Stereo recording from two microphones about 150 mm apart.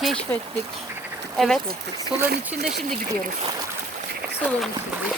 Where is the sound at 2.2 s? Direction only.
90° right.